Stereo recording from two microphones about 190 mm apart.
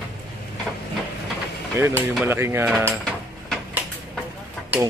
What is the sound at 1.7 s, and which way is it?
Mechanisms, 10° right (ahead or behind).